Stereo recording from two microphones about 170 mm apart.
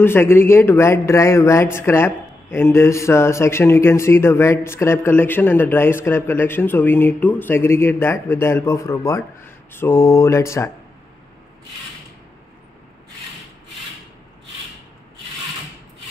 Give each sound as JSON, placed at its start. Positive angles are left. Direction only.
{"t": 0.0, "sound": "a man's voice", "side_deg": 15}